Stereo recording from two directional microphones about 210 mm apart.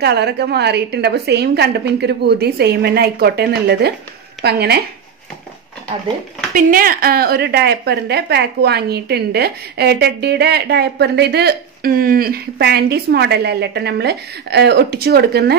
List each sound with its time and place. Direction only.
0.0 s a woman's voice: 50° right (ahead or behind)
6.5 s a woman's voice: 45° right (ahead or behind)